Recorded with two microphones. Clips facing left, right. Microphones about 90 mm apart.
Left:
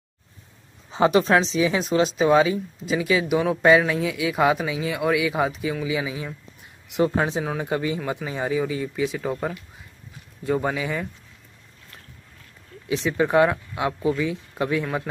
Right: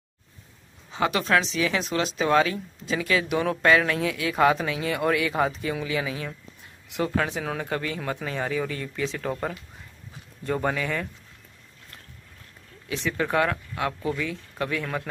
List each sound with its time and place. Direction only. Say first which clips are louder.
0.9 s speech: left 5 dB; 25° left (ahead or behind)
6.9 s speech: left 4 dB; 25° left (ahead or behind)
7.4 s speech: left 4 dB; 15° left (ahead or behind)
12.8 s speech: left 5 dB; 20° left (ahead or behind)